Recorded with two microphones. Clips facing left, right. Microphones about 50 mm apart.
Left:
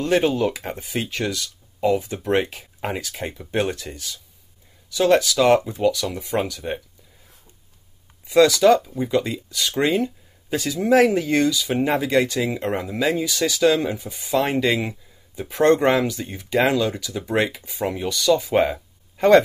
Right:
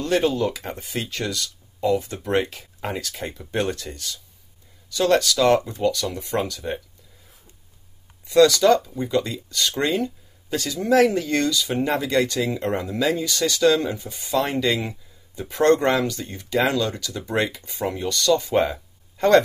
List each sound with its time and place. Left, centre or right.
0.0 s speech: centre
8.3 s speech: centre